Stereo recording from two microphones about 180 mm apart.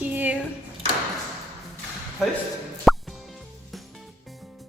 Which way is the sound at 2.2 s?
Centre (ahead or behind).